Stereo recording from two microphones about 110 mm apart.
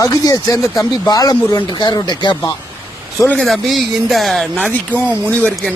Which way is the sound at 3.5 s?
Centre (ahead or behind).